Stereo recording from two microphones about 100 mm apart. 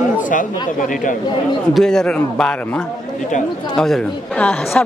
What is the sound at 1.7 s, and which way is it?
A woman's voice, 5° left (ahead or behind).